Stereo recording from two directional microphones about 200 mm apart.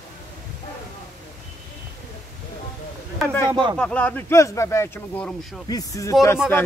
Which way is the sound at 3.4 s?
25° right (ahead or behind).